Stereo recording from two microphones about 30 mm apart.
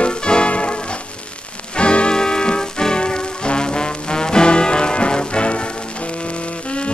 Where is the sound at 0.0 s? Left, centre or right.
Left.